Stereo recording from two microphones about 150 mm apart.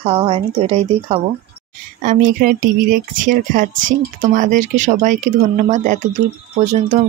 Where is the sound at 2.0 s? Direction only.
65° right (ahead or behind).